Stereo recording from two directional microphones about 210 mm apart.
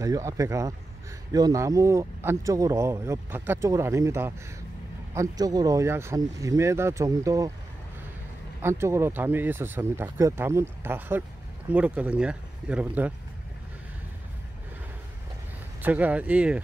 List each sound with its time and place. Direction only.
0.0 s speech: 15° right (ahead or behind)
8.6 s speech: 10° right (ahead or behind)
15.8 s speech: 5° right (ahead or behind)